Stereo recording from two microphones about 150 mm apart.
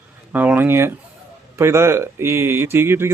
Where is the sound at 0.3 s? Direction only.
10° right (ahead or behind).